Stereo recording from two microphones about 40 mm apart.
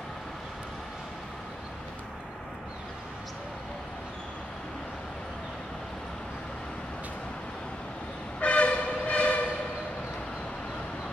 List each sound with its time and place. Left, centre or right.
8.4 s train: left